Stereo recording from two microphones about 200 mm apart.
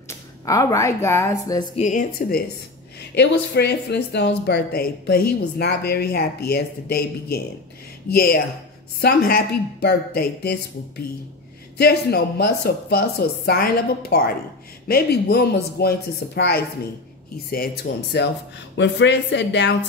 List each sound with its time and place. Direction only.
0.1 s speech: 15° left (ahead or behind)
1.8 s a woman's voice: 40° left (ahead or behind)
3.5 s a woman's voice: 55° left (ahead or behind)
11.8 s a woman's voice: 55° left (ahead or behind)
17.9 s a woman's voice: 45° left (ahead or behind)
18.8 s a woman's voice: 60° left (ahead or behind)